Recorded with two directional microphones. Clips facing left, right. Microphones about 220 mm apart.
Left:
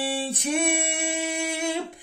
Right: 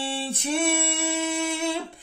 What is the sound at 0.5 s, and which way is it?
Singing, 15° left (ahead or behind).